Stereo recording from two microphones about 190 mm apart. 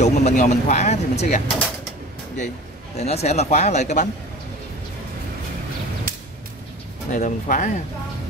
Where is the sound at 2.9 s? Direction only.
35° left (ahead or behind).